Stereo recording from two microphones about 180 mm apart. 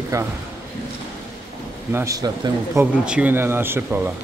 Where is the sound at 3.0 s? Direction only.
5° right (ahead or behind).